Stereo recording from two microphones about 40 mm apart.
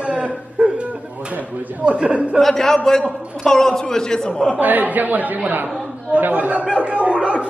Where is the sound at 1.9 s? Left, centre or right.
Right.